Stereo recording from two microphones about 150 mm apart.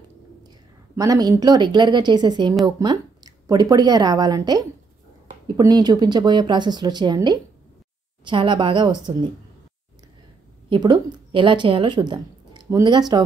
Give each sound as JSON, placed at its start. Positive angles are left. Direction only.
{"t": 0.9, "sound": "a woman's voice", "side_deg": -25}
{"t": 10.7, "sound": "a woman's voice", "side_deg": -30}